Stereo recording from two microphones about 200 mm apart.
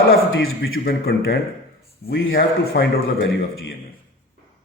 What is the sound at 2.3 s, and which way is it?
Speech, 50° left (ahead or behind).